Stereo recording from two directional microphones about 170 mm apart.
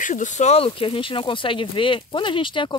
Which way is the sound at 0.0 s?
50° left (ahead or behind).